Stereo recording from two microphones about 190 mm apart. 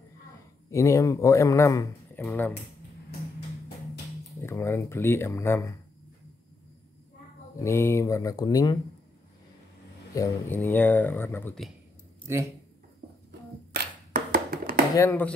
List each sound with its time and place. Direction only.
0.7 s a man's voice: 15° left (ahead or behind)
4.4 s a man's voice: 15° left (ahead or behind)
7.5 s a man's voice: 15° left (ahead or behind)
10.1 s a man's voice: 15° left (ahead or behind)
14.1 s hands: 50° right (ahead or behind)
15.0 s a man's voice: 10° left (ahead or behind)